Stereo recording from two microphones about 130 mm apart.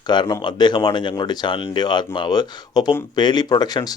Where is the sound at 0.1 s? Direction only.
35° left (ahead or behind).